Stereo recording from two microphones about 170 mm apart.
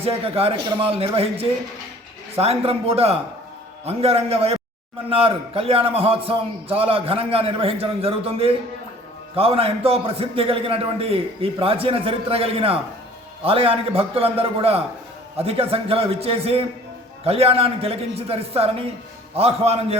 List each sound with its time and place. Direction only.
0.0 s a man's voice: 35° right (ahead or behind)